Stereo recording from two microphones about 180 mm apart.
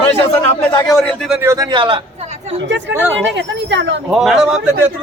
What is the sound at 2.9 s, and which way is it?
Speech, 90° right.